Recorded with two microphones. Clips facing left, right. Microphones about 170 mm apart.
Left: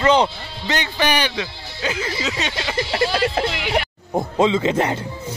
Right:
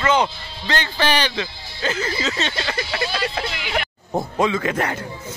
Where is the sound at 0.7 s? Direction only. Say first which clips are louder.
Even; 15° left (ahead or behind).